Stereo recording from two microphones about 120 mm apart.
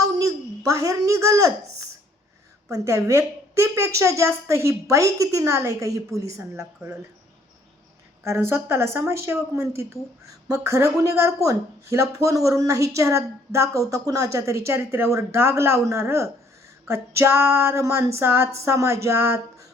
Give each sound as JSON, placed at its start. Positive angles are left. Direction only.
{"t": 0.0, "sound": "a sound", "side_deg": -30}
{"t": 2.6, "sound": "a woman's voice", "side_deg": -25}
{"t": 8.2, "sound": "a woman's voice", "side_deg": -20}